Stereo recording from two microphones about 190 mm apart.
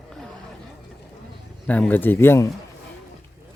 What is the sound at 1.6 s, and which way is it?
Speech, 10° left (ahead or behind).